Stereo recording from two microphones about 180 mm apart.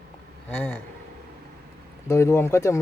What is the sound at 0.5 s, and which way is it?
Speech, 10° left (ahead or behind).